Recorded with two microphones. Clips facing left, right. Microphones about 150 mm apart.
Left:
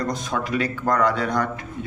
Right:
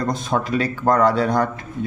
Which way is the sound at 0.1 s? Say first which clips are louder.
Right 4 dB; 30° right (ahead or behind).